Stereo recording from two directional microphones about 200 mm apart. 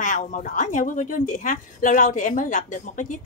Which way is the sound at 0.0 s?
40° left (ahead or behind).